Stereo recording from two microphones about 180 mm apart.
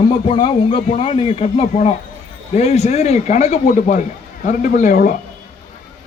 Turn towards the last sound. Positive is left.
turn(degrees=50)  # may be behind; listen again after turning